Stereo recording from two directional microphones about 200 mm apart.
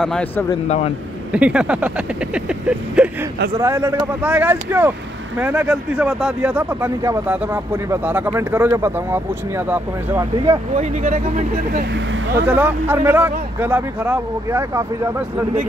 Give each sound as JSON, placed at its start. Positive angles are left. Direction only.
{"t": 0.0, "sound": "speech", "side_deg": 5}
{"t": 1.3, "sound": "speech", "side_deg": -5}
{"t": 3.5, "sound": "speech", "side_deg": -15}
{"t": 10.8, "sound": "speech", "side_deg": -35}
{"t": 12.4, "sound": "speech", "side_deg": -10}